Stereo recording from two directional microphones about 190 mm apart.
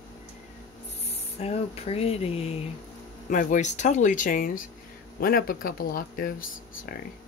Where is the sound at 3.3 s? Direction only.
45° left (ahead or behind).